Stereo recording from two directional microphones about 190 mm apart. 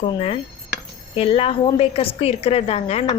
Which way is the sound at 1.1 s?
30° left (ahead or behind).